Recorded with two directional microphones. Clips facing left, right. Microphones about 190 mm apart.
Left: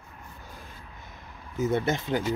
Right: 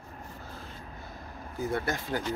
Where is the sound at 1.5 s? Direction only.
20° left (ahead or behind).